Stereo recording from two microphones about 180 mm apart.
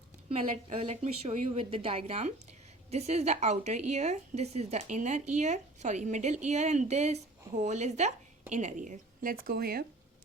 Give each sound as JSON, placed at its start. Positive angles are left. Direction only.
{"t": 0.3, "sound": "a woman's voice", "side_deg": -30}